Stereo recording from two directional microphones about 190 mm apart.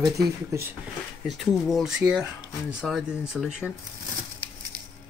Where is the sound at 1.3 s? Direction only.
Centre (ahead or behind).